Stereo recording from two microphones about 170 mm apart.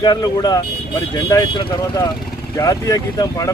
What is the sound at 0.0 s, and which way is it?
Speech, 25° left (ahead or behind).